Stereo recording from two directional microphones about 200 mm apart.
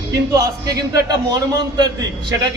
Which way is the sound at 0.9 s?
20° right (ahead or behind).